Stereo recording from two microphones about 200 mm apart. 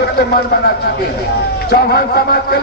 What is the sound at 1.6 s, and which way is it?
Speech, 50° left (ahead or behind).